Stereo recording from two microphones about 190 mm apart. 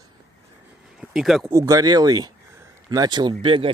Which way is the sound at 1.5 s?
15° right (ahead or behind).